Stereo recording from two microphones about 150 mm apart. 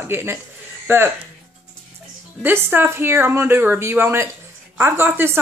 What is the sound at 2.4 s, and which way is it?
Speech, 15° right (ahead or behind).